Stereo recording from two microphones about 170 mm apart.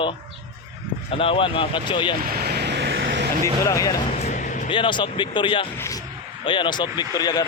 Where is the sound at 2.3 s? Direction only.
70° right (ahead or behind).